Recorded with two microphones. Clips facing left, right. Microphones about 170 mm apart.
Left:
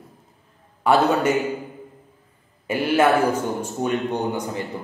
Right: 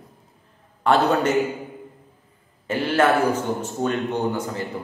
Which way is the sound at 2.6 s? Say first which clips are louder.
Left 1 dB; 10° left (ahead or behind).